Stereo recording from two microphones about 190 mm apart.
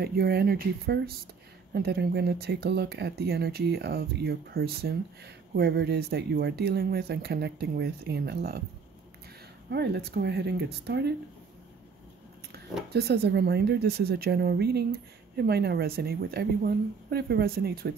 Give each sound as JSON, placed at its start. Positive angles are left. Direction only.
{"t": 0.0, "sound": "speech", "side_deg": -55}
{"t": 9.7, "sound": "speech", "side_deg": -60}
{"t": 12.9, "sound": "speech", "side_deg": -60}